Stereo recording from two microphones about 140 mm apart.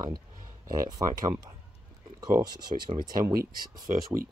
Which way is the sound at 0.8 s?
25° right (ahead or behind).